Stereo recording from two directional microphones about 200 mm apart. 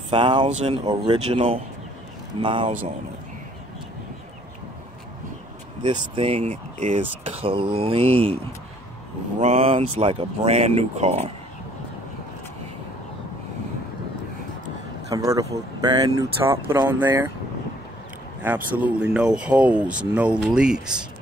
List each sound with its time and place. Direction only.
0.1 s speech: 25° right (ahead or behind)
5.8 s speech: 20° right (ahead or behind)
9.4 s speech: 30° right (ahead or behind)
15.0 s speech: 15° right (ahead or behind)
18.7 s speech: 5° right (ahead or behind)